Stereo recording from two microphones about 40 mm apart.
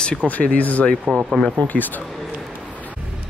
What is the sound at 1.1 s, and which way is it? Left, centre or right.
Speech, right.